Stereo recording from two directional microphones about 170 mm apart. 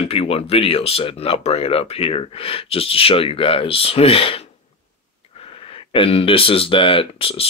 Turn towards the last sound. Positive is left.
turn(degrees=35)  # may be behind; listen again after turning